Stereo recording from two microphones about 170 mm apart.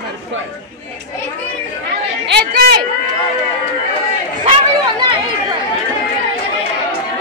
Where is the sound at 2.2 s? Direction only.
75° right (ahead or behind).